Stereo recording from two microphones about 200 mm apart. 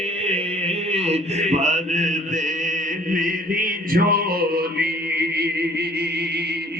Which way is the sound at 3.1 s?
45° right (ahead or behind).